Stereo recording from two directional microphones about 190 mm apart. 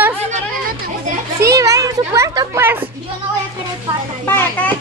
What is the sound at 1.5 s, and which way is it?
Children playing, 15° right (ahead or behind).